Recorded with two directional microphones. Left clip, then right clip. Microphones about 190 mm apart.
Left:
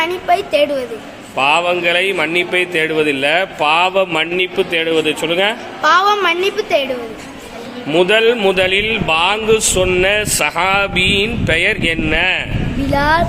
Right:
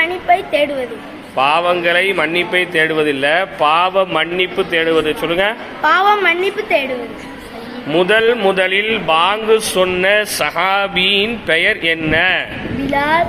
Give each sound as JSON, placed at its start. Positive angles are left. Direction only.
{"t": 0.0, "sound": "a woman's voice", "side_deg": 15}
{"t": 5.8, "sound": "a woman's voice", "side_deg": 10}
{"t": 7.9, "sound": "a woman's voice", "side_deg": 20}